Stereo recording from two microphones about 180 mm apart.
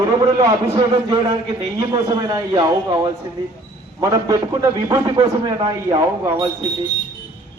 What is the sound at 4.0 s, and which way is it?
A man's voice, 20° right (ahead or behind).